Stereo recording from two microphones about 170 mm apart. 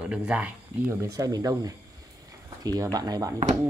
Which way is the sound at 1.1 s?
20° right (ahead or behind).